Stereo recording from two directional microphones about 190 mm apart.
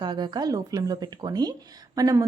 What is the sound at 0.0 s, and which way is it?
A woman's voice, 20° right (ahead or behind).